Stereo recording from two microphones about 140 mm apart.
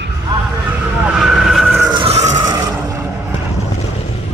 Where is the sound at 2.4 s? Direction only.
25° right (ahead or behind).